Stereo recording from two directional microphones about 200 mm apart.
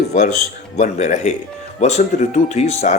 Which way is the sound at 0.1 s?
35° left (ahead or behind).